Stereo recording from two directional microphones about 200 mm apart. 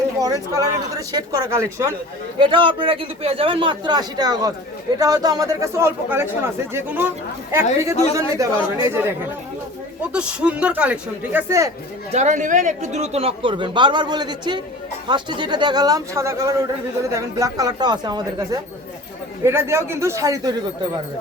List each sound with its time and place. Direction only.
0.2 s a man's voice: 20° right (ahead or behind)
12.1 s a man's voice: 35° right (ahead or behind); by 20.5 s 15° right (ahead or behind)